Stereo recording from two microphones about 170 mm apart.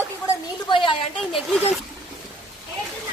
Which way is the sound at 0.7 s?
30° left (ahead or behind).